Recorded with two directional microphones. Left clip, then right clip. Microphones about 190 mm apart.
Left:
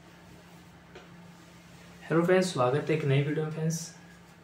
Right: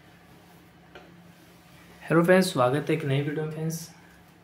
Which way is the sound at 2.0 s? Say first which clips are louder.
Right 4 dB; 40° right (ahead or behind).